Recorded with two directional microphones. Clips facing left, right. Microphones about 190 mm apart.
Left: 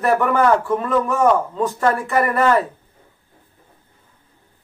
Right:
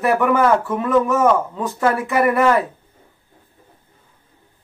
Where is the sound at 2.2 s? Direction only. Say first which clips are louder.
Right 2 dB; 15° right (ahead or behind).